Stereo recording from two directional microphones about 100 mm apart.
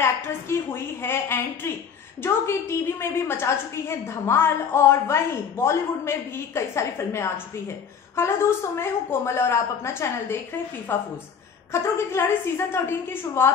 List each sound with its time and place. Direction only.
0.0 s a woman's voice: 25° left (ahead or behind)